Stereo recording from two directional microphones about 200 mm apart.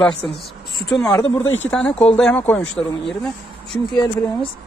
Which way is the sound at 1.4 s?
70° left (ahead or behind).